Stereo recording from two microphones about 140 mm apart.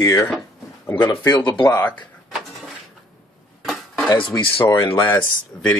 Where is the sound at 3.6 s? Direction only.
Centre (ahead or behind).